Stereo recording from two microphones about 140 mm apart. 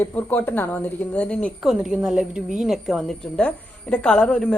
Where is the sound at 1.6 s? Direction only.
5° right (ahead or behind).